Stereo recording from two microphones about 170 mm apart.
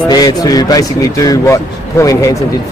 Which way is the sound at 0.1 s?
20° left (ahead or behind).